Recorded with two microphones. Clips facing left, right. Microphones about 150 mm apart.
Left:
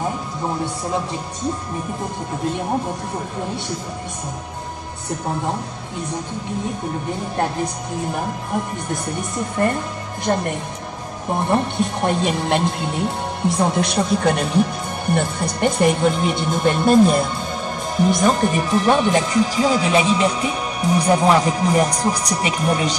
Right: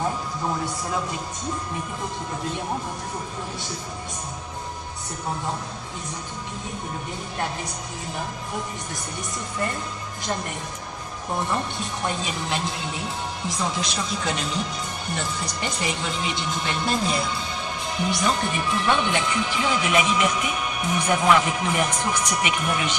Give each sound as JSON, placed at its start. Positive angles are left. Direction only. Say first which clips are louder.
{"t": 9.6, "sound": "a woman's voice", "louder": "left 9 dB", "side_deg": 55}
{"t": 11.3, "sound": "a woman's voice", "louder": "left 8 dB", "side_deg": 55}